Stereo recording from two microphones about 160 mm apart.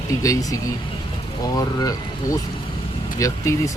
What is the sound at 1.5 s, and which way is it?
Speech, 25° left (ahead or behind).